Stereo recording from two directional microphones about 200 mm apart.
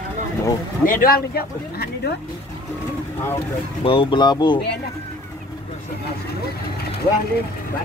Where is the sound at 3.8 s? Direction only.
25° left (ahead or behind).